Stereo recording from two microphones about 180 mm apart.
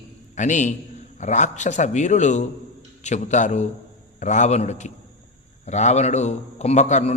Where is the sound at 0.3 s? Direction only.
40° left (ahead or behind).